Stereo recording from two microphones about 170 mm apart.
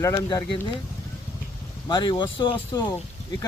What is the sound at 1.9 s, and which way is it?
Speech, 25° left (ahead or behind).